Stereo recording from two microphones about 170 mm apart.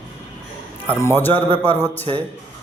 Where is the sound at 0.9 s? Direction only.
10° left (ahead or behind).